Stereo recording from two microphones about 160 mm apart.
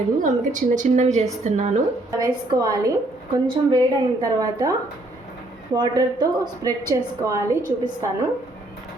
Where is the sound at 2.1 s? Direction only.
20° right (ahead or behind).